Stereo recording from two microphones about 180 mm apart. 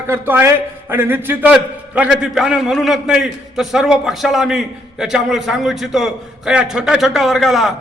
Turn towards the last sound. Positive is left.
turn(degrees=0)  # may be behind; listen again after turning